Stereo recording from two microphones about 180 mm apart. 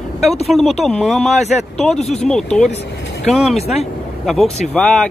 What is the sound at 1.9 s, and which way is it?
Speech, 35° left (ahead or behind).